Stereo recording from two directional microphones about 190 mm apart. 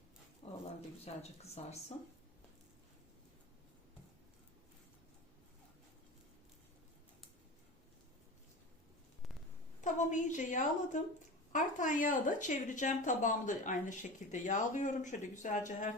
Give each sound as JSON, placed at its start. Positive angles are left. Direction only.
{"t": 0.4, "sound": "a sound", "side_deg": 30}
{"t": 1.1, "sound": "speech", "side_deg": 30}
{"t": 9.8, "sound": "speech", "side_deg": 40}